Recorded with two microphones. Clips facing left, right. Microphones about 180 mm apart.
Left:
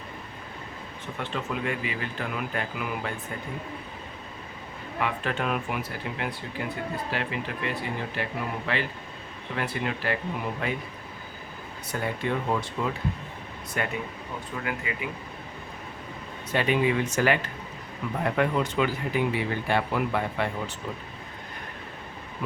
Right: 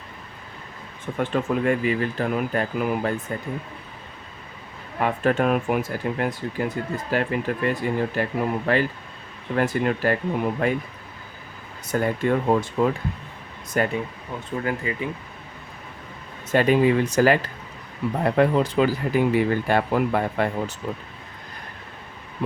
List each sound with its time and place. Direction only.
1.2 s speech: 50° right (ahead or behind)
4.9 s speech: 45° right (ahead or behind)
11.9 s speech: 45° right (ahead or behind)
16.5 s speech: 40° right (ahead or behind)